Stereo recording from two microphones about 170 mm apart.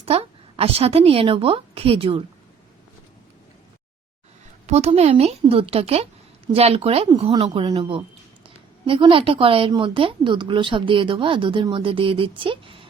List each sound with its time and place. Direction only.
0.0 s a woman's voice: 35° right (ahead or behind)
4.6 s a woman's voice: 40° right (ahead or behind)